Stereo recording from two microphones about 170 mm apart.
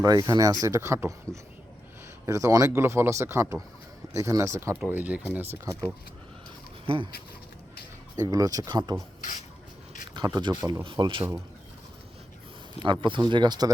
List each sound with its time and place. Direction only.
0.0 s speech: 20° right (ahead or behind)
6.8 s speech: 30° right (ahead or behind)
8.1 s speech: 20° right (ahead or behind)
10.2 s speech: 25° right (ahead or behind)
12.8 s speech: 30° right (ahead or behind)